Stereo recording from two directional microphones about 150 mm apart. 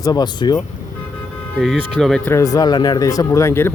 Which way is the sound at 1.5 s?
Centre (ahead or behind).